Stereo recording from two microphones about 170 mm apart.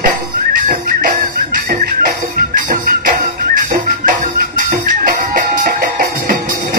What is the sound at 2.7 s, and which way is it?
Music, 60° right (ahead or behind).